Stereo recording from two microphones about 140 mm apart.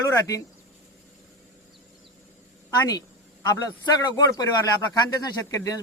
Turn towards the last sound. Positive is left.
turn(degrees=25)  # may be behind; listen again after turning